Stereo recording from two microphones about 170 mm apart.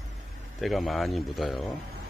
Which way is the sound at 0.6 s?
Centre (ahead or behind).